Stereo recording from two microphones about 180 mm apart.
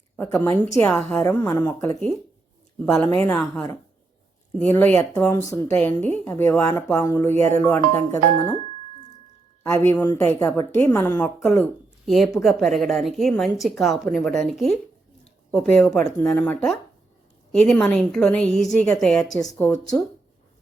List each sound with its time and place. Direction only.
0.2 s a woman's voice: 10° left (ahead or behind)
9.6 s a woman's voice: 15° left (ahead or behind)